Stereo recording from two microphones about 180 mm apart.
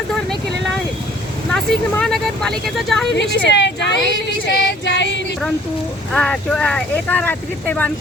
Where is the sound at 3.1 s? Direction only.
75° left (ahead or behind).